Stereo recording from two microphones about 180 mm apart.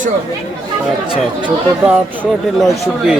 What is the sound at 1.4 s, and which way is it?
Speech, 5° right (ahead or behind).